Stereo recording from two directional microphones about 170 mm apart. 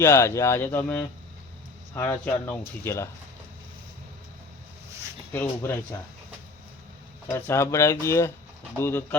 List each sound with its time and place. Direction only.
0.0 s speech: 15° left (ahead or behind)
5.3 s speech: 10° left (ahead or behind)
7.3 s speech: 15° left (ahead or behind)